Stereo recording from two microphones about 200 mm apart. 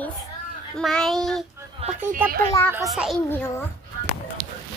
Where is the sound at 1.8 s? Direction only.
30° right (ahead or behind).